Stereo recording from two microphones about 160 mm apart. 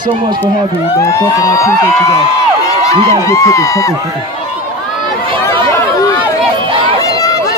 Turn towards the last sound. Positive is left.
turn(degrees=20)  # may be behind; listen again after turning